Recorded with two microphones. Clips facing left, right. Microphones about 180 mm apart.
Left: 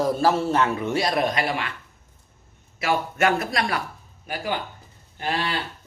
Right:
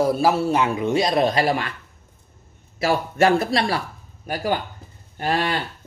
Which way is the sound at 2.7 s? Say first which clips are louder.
Right 4 dB; 35° right (ahead or behind).